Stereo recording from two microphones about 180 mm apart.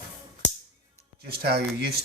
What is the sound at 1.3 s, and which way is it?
Speech, 60° right (ahead or behind).